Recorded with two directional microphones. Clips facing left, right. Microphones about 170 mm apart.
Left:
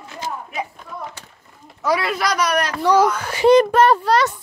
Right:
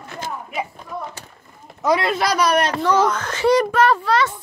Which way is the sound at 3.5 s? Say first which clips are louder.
Left 4 dB; 25° left (ahead or behind).